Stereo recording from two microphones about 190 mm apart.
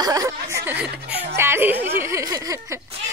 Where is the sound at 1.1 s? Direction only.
60° right (ahead or behind).